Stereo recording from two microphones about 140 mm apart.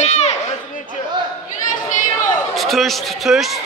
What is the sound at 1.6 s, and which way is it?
Chatter, 70° left (ahead or behind).